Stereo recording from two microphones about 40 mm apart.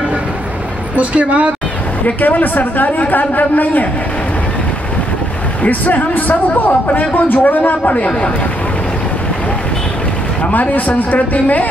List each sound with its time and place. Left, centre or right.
0.9 s a woman's voice: right
2.2 s a man's voice: left
5.6 s a man's voice: left
10.5 s a man's voice: left